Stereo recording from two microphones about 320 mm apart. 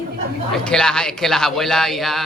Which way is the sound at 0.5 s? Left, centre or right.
Centre.